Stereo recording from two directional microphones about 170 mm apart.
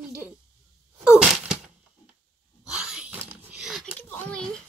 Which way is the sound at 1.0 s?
5° right (ahead or behind).